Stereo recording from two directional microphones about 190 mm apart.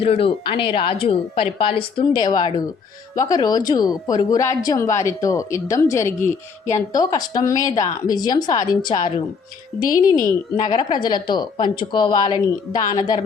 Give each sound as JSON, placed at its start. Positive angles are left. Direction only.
{"t": 0.0, "sound": "a woman's voice", "side_deg": 30}